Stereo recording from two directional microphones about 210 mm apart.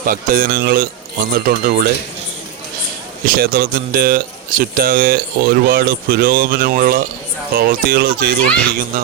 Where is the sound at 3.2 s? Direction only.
45° right (ahead or behind).